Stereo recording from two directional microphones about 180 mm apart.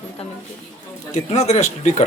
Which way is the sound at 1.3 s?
35° left (ahead or behind).